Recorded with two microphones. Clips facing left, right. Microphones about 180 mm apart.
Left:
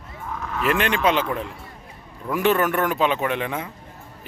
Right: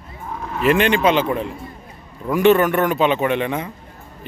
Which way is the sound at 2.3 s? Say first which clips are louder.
Right 6 dB; centre (ahead or behind).